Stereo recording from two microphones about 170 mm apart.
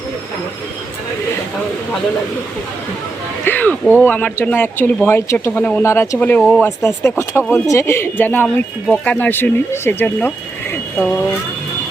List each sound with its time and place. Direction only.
3.4 s speech: 10° left (ahead or behind)